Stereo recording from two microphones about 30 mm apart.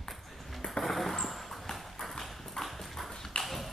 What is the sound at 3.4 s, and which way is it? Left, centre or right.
Tap, centre.